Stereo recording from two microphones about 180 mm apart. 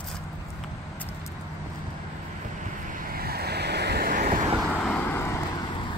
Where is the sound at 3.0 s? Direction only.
55° right (ahead or behind).